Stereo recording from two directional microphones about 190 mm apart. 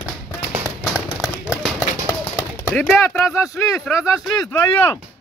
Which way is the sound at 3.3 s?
15° left (ahead or behind).